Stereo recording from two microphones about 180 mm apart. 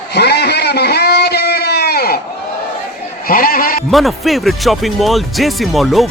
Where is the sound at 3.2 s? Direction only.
55° left (ahead or behind).